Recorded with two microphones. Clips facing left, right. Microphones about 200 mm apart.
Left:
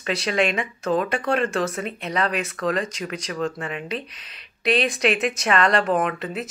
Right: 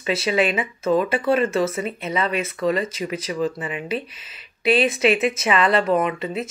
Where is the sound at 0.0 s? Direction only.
Centre (ahead or behind).